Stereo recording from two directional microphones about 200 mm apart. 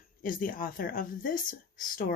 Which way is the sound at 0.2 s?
45° left (ahead or behind).